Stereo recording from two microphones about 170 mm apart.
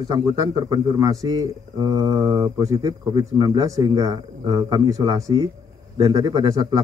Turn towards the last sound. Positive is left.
turn(degrees=-20)  # may be behind; listen again after turning